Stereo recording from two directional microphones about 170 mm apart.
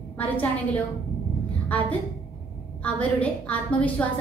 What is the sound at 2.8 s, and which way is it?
A woman's voice, 10° left (ahead or behind).